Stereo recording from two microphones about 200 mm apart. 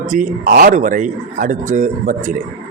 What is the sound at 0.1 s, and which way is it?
A man's voice, 40° right (ahead or behind).